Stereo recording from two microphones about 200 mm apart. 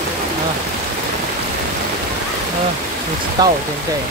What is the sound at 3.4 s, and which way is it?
Speech, 20° right (ahead or behind).